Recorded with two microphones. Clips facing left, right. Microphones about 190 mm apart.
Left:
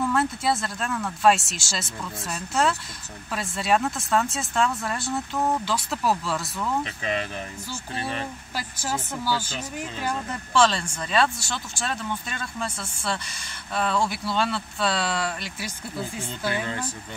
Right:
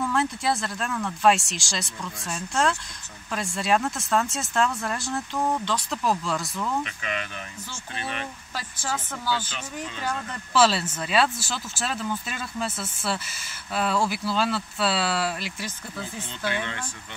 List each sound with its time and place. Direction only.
0.0 s speech: centre (ahead or behind)
6.8 s speech: 35° left (ahead or behind)
8.5 s speech: 10° left (ahead or behind)
10.5 s speech: 5° right (ahead or behind)
16.4 s speech: 35° left (ahead or behind)